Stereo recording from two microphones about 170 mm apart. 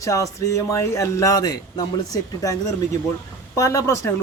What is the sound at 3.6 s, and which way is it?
Speech, 20° left (ahead or behind).